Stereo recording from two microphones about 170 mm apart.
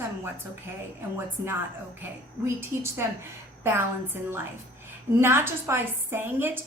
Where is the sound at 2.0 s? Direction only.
15° right (ahead or behind).